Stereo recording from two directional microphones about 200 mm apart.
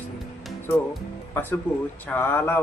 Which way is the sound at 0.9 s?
10° left (ahead or behind).